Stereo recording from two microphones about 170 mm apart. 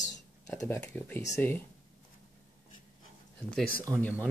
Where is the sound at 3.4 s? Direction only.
5° left (ahead or behind).